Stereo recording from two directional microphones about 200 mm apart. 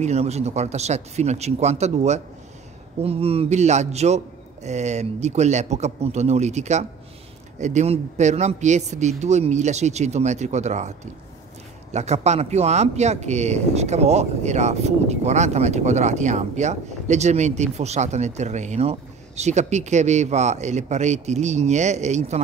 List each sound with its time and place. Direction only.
0.0 s speech: 35° right (ahead or behind)